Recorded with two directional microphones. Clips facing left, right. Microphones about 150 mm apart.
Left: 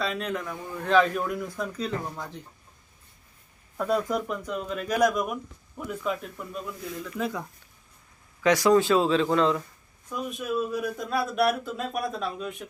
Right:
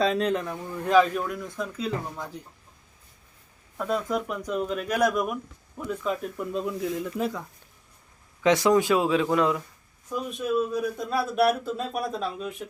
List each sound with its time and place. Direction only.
0.0 s a man's voice: 35° right (ahead or behind)
0.9 s speech: 5° right (ahead or behind)
3.8 s speech: centre (ahead or behind)
4.4 s speech: 15° right (ahead or behind); by 6.3 s centre (ahead or behind)
6.3 s speech: 25° right (ahead or behind)
8.4 s speech: 20° right (ahead or behind)
10.2 s speech: 5° left (ahead or behind)